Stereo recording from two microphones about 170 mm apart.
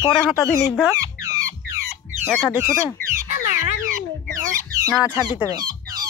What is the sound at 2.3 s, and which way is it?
Speech, 10° right (ahead or behind).